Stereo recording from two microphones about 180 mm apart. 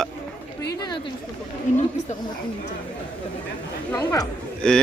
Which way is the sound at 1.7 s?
45° left (ahead or behind).